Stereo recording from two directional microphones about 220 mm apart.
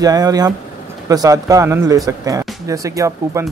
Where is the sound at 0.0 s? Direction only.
15° right (ahead or behind).